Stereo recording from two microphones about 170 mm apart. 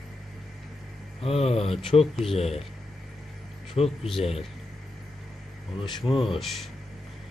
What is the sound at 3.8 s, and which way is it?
Speech, 35° left (ahead or behind).